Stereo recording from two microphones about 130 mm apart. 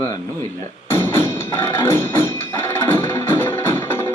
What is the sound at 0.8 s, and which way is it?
Music, 20° left (ahead or behind).